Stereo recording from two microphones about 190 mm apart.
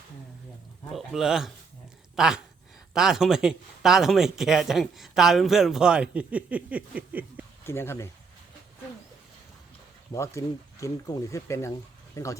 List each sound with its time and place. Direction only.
0.9 s speech: centre (ahead or behind)
7.6 s speech: 15° left (ahead or behind)
10.1 s speech: 15° left (ahead or behind)